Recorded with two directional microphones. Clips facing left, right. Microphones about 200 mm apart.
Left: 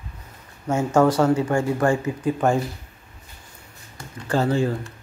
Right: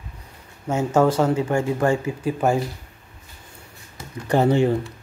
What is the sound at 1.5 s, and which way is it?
Speech, 20° right (ahead or behind).